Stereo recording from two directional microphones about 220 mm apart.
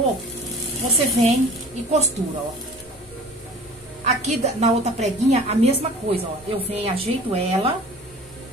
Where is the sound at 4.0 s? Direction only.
30° right (ahead or behind).